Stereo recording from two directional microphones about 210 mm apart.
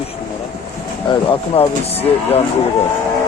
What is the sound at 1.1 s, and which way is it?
Speech, 25° left (ahead or behind).